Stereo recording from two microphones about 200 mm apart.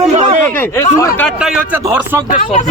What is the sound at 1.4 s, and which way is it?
Speech, 5° right (ahead or behind).